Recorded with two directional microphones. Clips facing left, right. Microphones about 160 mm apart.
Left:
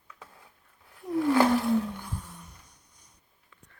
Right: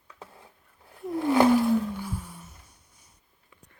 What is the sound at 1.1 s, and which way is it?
Whale vocalization, 25° right (ahead or behind).